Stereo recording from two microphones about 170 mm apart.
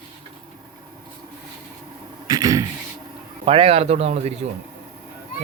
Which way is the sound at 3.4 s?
35° right (ahead or behind).